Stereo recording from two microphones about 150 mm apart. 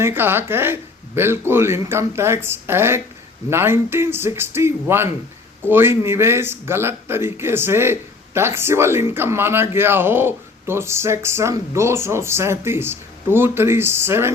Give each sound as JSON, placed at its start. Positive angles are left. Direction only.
{"t": 0.0, "sound": "speech", "side_deg": -15}